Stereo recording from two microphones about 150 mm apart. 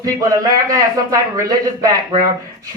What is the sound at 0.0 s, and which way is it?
Speech, 20° right (ahead or behind).